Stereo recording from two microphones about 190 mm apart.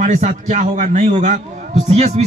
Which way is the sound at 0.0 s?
40° right (ahead or behind).